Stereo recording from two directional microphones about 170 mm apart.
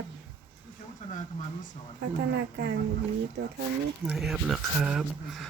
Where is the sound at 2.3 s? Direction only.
80° right.